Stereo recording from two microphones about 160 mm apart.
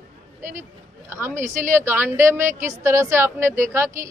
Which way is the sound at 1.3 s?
50° right (ahead or behind).